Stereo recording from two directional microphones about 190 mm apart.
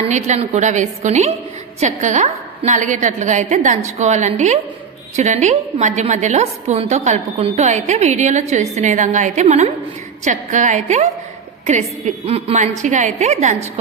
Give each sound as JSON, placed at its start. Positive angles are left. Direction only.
{"t": 0.1, "sound": "a woman's voice", "side_deg": -35}